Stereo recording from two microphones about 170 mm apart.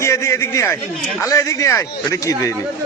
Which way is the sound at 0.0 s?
15° left (ahead or behind).